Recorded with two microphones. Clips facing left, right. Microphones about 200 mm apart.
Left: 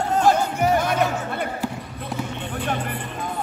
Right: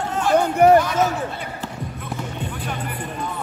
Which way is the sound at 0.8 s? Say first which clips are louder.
Right 1 dB; 55° left (ahead or behind).